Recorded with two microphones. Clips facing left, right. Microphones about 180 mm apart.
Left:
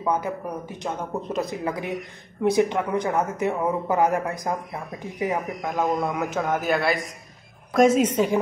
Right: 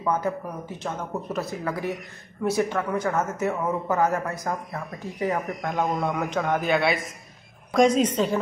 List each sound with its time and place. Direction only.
0.0 s speech: 15° left (ahead or behind)
5.4 s a man's voice: centre (ahead or behind)